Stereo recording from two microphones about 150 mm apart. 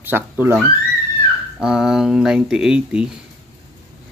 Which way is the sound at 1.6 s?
5° right (ahead or behind).